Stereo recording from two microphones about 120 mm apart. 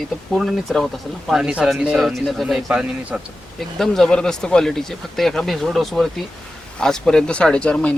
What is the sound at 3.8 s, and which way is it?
Speech, 5° left (ahead or behind).